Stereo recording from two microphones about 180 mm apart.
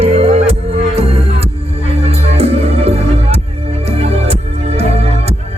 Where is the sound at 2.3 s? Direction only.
35° right (ahead or behind).